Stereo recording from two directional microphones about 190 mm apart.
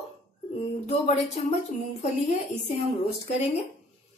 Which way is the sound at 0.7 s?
35° left (ahead or behind).